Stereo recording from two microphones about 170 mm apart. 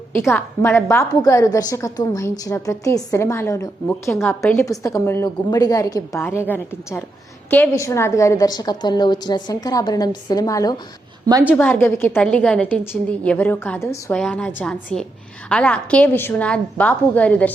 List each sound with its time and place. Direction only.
0.3 s a woman's voice: 15° left (ahead or behind)
7.5 s a woman's voice: 15° left (ahead or behind)